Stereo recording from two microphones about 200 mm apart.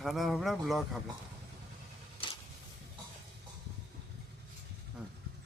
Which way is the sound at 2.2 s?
25° left (ahead or behind).